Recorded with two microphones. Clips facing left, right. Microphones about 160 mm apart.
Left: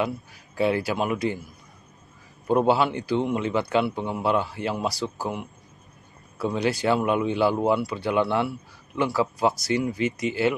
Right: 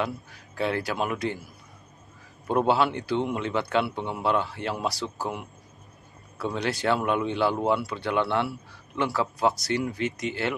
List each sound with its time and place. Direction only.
0.6 s speech: 5° left (ahead or behind)